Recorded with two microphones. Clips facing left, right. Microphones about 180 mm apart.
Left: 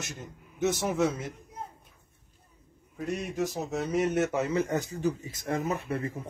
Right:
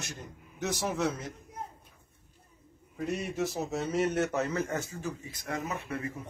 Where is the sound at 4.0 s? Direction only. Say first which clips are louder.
Left 2 dB; 5° left (ahead or behind).